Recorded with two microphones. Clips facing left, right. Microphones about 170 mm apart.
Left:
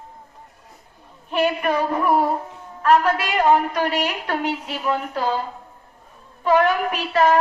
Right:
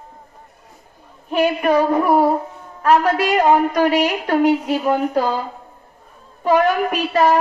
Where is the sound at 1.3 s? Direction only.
45° right (ahead or behind).